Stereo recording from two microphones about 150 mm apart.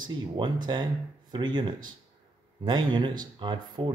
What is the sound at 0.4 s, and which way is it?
Speech, 30° right (ahead or behind).